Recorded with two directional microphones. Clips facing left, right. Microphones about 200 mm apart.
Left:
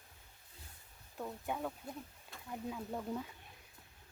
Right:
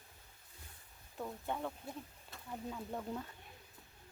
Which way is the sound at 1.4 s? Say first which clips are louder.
Left 1 dB; 5° left (ahead or behind).